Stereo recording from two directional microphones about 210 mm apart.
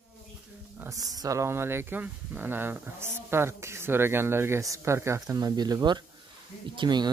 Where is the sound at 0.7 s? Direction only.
15° right (ahead or behind).